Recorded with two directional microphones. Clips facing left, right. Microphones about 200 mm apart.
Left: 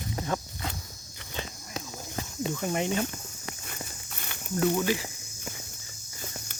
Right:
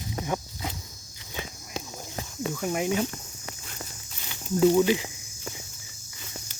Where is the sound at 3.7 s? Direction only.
55° left (ahead or behind).